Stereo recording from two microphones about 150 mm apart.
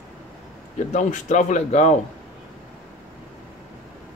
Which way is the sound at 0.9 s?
50° left (ahead or behind).